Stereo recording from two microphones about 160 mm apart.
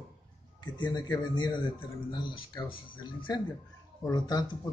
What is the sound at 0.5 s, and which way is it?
Speech, 25° left (ahead or behind).